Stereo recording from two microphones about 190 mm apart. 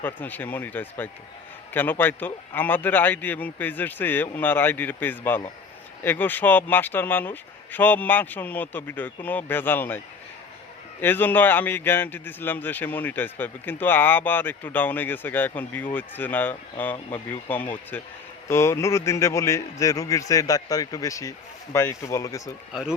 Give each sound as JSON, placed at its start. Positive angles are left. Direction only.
{"t": 0.0, "sound": "a man's voice", "side_deg": 10}
{"t": 11.0, "sound": "a man's voice", "side_deg": 10}
{"t": 22.7, "sound": "speech", "side_deg": -5}